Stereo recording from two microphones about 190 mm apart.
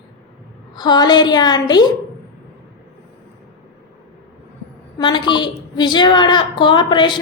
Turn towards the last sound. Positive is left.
turn(degrees=25)  # may be behind; listen again after turning